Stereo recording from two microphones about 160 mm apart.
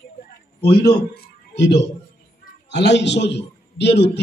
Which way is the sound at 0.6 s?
90° left.